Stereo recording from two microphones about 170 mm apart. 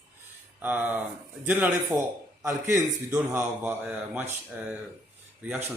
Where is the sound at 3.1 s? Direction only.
5° right (ahead or behind).